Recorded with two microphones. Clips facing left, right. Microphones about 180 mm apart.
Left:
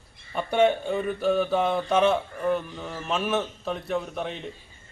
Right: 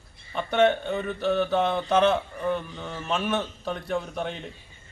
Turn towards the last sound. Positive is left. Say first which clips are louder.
# even
turn(degrees=0)  # may be behind; listen again after turning